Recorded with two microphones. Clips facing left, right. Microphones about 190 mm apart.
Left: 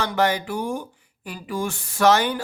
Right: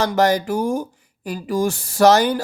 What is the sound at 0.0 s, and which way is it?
Speech, 40° right (ahead or behind).